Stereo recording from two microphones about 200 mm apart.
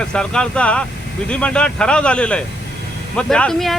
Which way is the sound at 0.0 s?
5° left (ahead or behind).